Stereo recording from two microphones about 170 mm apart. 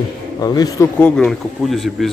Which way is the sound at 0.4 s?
20° left (ahead or behind).